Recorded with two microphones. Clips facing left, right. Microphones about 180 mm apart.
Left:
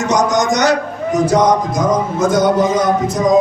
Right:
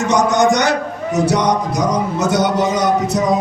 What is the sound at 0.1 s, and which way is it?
A man's voice, 60° right (ahead or behind).